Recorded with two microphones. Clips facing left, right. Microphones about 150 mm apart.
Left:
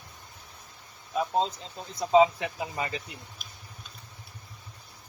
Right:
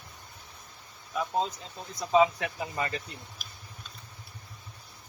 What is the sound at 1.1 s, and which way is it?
Speech, 25° left (ahead or behind).